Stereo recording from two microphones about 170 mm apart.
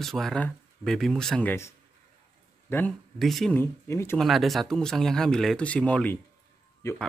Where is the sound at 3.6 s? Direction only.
15° left (ahead or behind).